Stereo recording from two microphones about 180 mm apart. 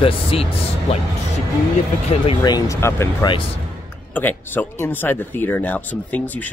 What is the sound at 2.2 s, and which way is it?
Speech, 25° left (ahead or behind).